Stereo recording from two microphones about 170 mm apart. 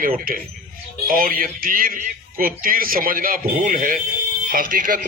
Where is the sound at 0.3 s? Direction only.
55° right (ahead or behind).